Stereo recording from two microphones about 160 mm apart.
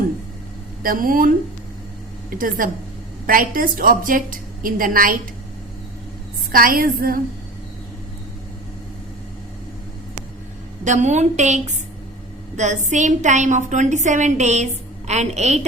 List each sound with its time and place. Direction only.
0.8 s a woman's voice: 60° right (ahead or behind)
2.3 s a woman's voice: 60° right (ahead or behind)
6.5 s a woman's voice: 60° right (ahead or behind)
10.8 s a woman's voice: 50° right (ahead or behind)